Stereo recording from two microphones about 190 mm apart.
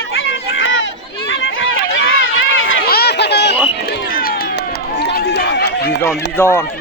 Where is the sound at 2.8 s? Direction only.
55° left (ahead or behind).